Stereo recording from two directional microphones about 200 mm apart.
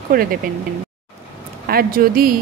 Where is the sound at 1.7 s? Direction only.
45° right (ahead or behind).